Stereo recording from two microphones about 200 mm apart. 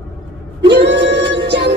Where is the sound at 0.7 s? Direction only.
60° right (ahead or behind).